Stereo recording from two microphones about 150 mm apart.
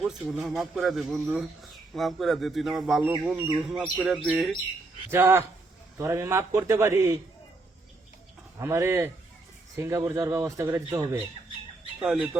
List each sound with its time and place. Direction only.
0.0 s a man's voice: centre (ahead or behind)
5.1 s a man's voice: 15° right (ahead or behind)
8.5 s a man's voice: 15° right (ahead or behind)
12.0 s a man's voice: 5° right (ahead or behind)